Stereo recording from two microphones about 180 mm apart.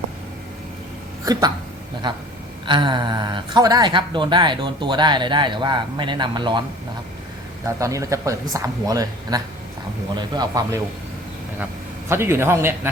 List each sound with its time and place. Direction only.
1.2 s speech: 20° right (ahead or behind)
7.8 s a man's voice: 20° right (ahead or behind)